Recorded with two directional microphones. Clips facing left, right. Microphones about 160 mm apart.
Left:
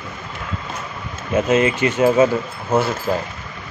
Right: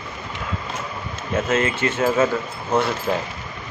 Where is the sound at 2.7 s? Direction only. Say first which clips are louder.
Left 2 dB; 5° left (ahead or behind).